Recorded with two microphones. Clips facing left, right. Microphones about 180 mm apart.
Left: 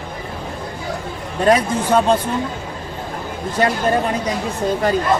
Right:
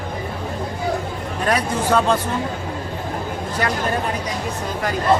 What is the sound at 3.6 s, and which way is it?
Speech, 25° left (ahead or behind).